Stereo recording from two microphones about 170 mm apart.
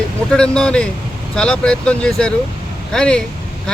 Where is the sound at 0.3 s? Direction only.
5° left (ahead or behind).